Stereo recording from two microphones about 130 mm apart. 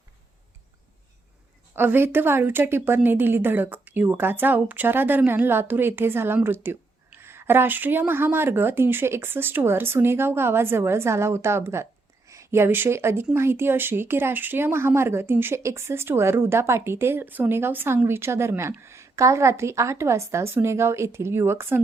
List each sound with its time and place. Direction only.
1.7 s a woman's voice: 15° right (ahead or behind)